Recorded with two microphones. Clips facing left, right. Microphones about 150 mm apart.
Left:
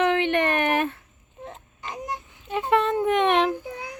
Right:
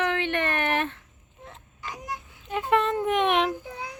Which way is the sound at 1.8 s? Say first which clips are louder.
Left 3 dB; 25° left (ahead or behind).